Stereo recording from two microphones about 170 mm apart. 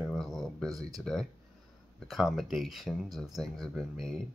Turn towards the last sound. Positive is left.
turn(degrees=0)  # may be behind; listen again after turning